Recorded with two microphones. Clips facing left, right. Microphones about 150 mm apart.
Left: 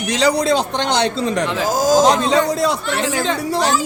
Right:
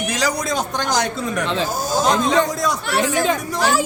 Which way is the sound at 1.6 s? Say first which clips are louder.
Left 7 dB; 90° left.